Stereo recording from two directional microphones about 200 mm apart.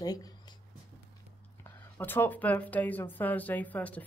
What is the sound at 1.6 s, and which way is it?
Speech, 10° left (ahead or behind).